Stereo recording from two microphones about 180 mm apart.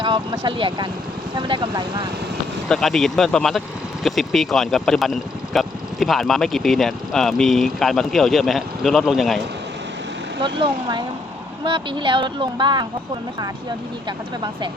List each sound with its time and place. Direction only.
0.0 s speech: 25° right (ahead or behind)
2.6 s speech: centre (ahead or behind)
10.4 s speech: 25° right (ahead or behind)